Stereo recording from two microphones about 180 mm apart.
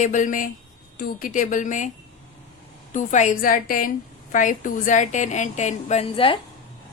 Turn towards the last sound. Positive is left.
turn(degrees=30)  # may be behind; listen again after turning